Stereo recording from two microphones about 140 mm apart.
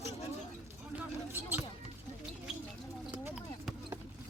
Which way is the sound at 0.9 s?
15° right (ahead or behind).